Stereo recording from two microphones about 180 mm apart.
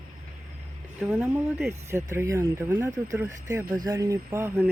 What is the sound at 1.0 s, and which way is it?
Speech, 10° right (ahead or behind).